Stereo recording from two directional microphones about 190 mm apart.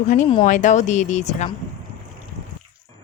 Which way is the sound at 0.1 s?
40° left (ahead or behind).